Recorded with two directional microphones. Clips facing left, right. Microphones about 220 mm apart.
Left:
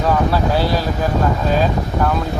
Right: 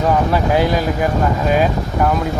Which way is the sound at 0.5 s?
15° right (ahead or behind).